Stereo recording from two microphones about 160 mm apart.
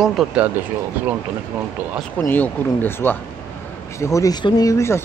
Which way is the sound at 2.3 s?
10° left (ahead or behind).